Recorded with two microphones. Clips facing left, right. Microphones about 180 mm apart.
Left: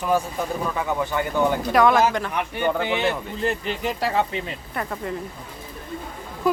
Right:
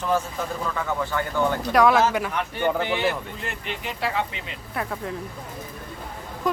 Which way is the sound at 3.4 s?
35° left (ahead or behind).